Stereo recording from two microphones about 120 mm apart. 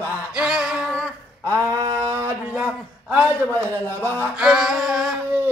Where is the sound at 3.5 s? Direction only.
15° left (ahead or behind).